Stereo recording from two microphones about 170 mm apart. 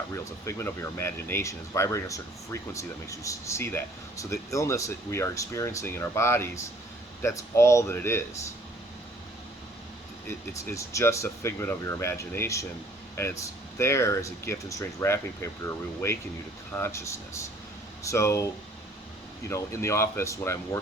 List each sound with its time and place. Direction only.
0.4 s speech: 15° left (ahead or behind)
10.2 s speech: 15° left (ahead or behind)
19.5 s speech: 15° left (ahead or behind)